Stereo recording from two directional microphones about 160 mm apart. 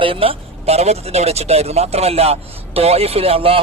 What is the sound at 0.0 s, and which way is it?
Speech, 35° right (ahead or behind).